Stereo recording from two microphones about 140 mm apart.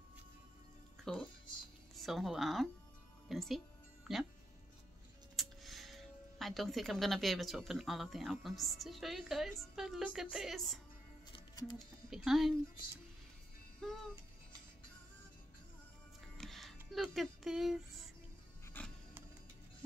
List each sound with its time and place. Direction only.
1.1 s speech: 5° left (ahead or behind)
5.3 s speech: centre (ahead or behind)
11.3 s music: 30° left (ahead or behind)
12.1 s speech: centre (ahead or behind)
13.8 s speech: centre (ahead or behind)
16.3 s music: centre (ahead or behind)
16.9 s speech: centre (ahead or behind)
18.8 s music: 15° left (ahead or behind)